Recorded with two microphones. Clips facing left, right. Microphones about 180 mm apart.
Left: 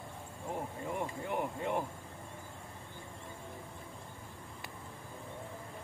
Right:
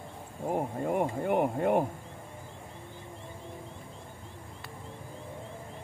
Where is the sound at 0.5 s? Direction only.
60° right (ahead or behind).